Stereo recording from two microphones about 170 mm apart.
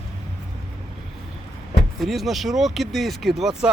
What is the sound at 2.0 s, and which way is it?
Speech, centre (ahead or behind).